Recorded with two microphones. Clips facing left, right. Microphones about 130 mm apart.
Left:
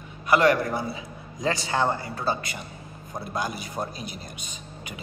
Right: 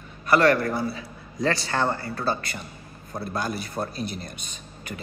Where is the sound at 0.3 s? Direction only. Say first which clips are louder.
Right 1 dB; 15° left (ahead or behind).